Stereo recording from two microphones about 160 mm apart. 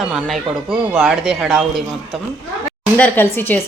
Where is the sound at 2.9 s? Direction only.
10° left (ahead or behind).